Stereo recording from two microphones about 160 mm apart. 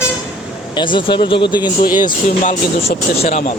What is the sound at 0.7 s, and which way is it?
Speech, 30° left (ahead or behind).